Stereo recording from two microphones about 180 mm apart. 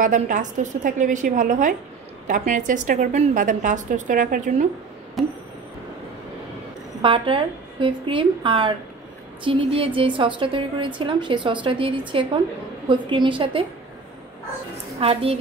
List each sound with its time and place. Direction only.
0.0 s a woman's voice: 45° right (ahead or behind)
5.2 s a sound: centre (ahead or behind)
7.0 s a woman's voice: 30° right (ahead or behind)
15.0 s a woman's voice: 30° right (ahead or behind)